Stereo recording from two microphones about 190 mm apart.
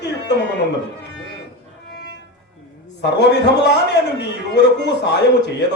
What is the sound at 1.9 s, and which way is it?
Music, 60° left (ahead or behind).